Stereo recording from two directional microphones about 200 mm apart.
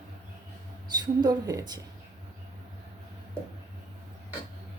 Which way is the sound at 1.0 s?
20° right (ahead or behind).